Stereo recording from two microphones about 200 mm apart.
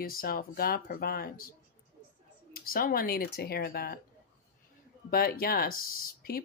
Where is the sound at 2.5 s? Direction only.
45° left (ahead or behind).